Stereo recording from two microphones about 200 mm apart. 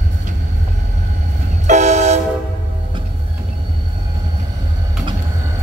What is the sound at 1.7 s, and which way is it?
Train, 35° right (ahead or behind).